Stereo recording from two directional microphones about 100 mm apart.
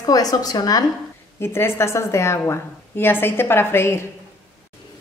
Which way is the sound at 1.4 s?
25° left (ahead or behind).